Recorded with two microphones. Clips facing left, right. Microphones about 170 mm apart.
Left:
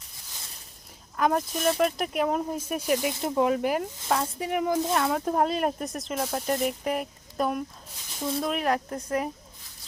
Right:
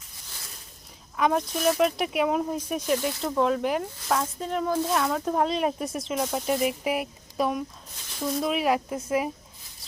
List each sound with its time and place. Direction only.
1.1 s speech: centre (ahead or behind)
3.2 s speech: 20° left (ahead or behind)
3.4 s speech: 5° left (ahead or behind)
4.9 s speech: 5° left (ahead or behind)